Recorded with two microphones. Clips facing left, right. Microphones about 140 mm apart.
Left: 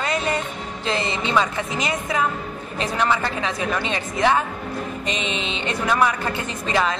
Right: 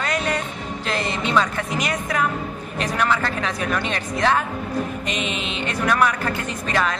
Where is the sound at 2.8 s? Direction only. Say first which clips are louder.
Even; 25° left (ahead or behind).